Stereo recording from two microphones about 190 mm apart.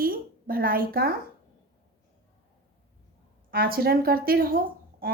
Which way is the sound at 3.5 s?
50° right (ahead or behind).